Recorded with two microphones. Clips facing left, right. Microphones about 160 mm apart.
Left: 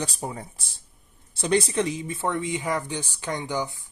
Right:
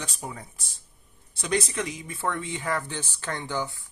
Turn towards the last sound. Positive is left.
turn(degrees=15)  # may be behind; listen again after turning